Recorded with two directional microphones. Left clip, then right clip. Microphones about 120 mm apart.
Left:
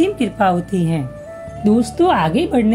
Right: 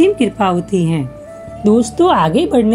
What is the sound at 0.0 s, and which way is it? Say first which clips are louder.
A woman's voice: right 3 dB; centre (ahead or behind).